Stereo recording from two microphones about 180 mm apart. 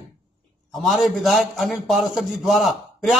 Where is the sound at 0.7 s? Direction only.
Centre (ahead or behind).